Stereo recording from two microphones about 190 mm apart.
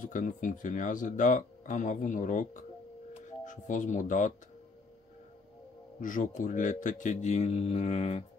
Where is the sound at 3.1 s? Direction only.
40° left (ahead or behind).